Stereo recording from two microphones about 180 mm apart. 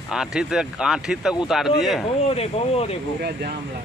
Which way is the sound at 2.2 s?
35° left (ahead or behind).